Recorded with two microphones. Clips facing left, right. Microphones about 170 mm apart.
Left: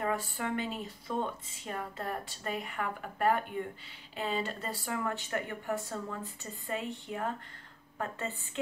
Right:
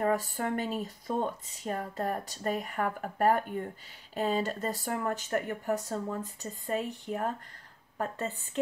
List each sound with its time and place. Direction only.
0.0 s speech: 40° right (ahead or behind)